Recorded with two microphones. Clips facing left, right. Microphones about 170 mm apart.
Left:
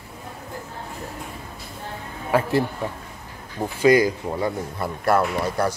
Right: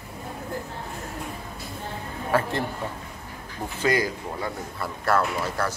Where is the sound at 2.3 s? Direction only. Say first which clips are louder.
Left 4 dB; 15° left (ahead or behind).